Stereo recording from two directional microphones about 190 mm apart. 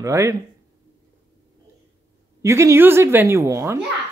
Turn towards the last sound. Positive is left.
turn(degrees=-15)  # may be behind; listen again after turning